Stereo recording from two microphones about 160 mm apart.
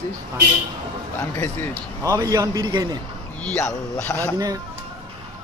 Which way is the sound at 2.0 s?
20° right (ahead or behind).